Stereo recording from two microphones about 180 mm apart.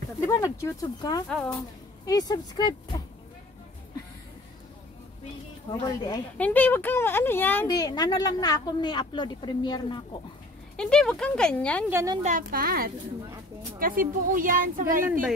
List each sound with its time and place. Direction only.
0.3 s speech: 15° left (ahead or behind)
1.3 s speech: centre (ahead or behind)
2.0 s speech: 20° left (ahead or behind)
5.7 s speech: 20° left (ahead or behind)
6.3 s speech: 10° left (ahead or behind)
7.6 s speech: 20° left (ahead or behind)
10.8 s speech: 5° left (ahead or behind)
11.9 s speech: 15° right (ahead or behind)
12.2 s speech: 45° right (ahead or behind)
15.0 s speech: 10° right (ahead or behind)